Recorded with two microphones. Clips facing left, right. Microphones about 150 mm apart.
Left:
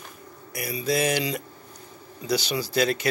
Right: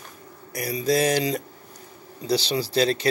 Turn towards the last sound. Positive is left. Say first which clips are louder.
# right 2 dB
turn(degrees=-30)  # may be behind; listen again after turning